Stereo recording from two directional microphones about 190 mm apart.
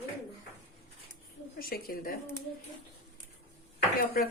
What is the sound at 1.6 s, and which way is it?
Speech, 50° left (ahead or behind).